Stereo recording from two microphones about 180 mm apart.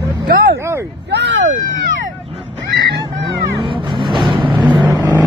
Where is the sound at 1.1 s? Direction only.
85° right.